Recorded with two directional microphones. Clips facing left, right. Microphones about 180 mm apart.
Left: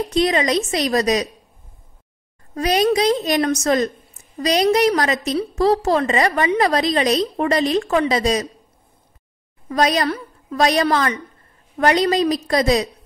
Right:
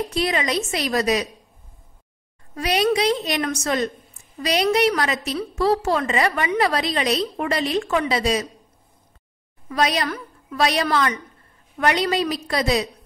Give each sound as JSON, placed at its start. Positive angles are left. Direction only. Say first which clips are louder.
{"t": 0.1, "sound": "a woman's voice", "louder": "left 8 dB", "side_deg": 35}
{"t": 2.5, "sound": "a woman's voice", "louder": "left 3 dB", "side_deg": 40}
{"t": 9.7, "sound": "a woman's voice", "louder": "left 4 dB", "side_deg": 45}